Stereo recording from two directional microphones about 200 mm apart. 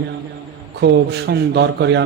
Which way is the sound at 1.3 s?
60° right (ahead or behind).